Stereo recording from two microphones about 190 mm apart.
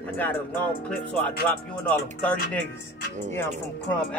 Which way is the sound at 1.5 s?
5° left (ahead or behind).